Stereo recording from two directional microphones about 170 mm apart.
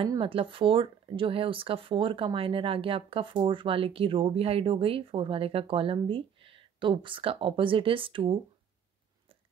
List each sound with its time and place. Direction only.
0.1 s speech: 30° right (ahead or behind)